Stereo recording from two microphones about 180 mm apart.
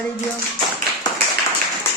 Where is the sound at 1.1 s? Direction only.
20° left (ahead or behind).